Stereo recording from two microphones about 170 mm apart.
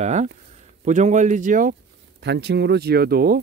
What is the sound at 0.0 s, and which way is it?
Speech, 40° right (ahead or behind).